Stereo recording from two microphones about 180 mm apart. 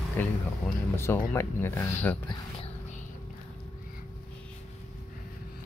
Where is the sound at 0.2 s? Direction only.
10° left (ahead or behind).